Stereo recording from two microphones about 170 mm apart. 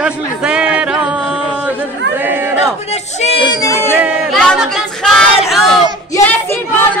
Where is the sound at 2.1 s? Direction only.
10° right (ahead or behind).